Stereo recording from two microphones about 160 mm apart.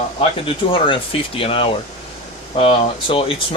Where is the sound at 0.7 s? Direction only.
35° left (ahead or behind).